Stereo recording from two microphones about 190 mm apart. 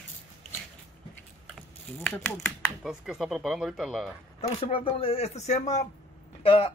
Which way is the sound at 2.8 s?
5° right (ahead or behind).